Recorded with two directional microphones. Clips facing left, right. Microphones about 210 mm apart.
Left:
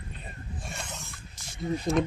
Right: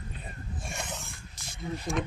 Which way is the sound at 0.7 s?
15° right (ahead or behind).